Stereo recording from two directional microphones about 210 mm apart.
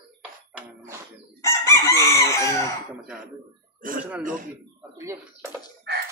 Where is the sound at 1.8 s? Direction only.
15° left (ahead or behind).